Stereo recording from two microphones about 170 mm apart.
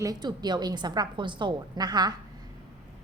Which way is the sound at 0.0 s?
25° right (ahead or behind).